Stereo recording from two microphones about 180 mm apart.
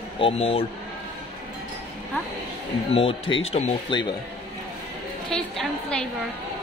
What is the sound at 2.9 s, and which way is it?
Speech, 30° left (ahead or behind).